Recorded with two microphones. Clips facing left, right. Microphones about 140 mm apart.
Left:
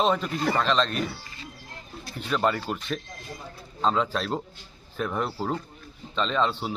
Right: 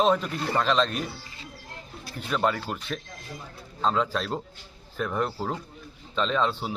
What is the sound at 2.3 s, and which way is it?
Speech, centre (ahead or behind).